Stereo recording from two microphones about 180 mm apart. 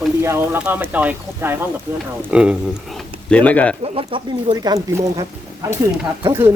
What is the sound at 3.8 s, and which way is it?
Speech, 30° right (ahead or behind).